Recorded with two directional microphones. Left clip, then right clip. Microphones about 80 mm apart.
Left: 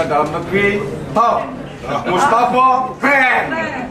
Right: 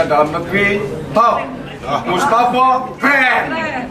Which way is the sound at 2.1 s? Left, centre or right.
Centre.